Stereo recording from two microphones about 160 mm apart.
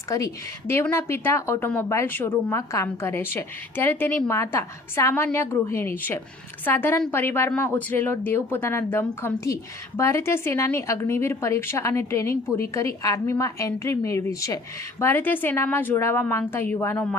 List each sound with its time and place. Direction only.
0.1 s a woman's voice: 20° left (ahead or behind)